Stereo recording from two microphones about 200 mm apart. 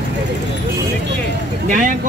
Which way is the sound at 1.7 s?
40° right (ahead or behind).